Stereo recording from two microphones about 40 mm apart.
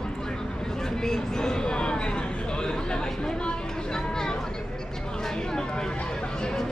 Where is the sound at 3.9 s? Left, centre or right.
Centre.